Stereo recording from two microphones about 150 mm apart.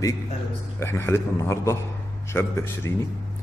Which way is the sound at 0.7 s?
15° left (ahead or behind).